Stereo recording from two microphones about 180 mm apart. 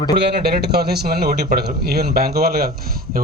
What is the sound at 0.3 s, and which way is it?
A man's voice, 65° right (ahead or behind).